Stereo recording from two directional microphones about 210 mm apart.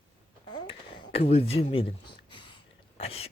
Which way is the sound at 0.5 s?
25° left (ahead or behind).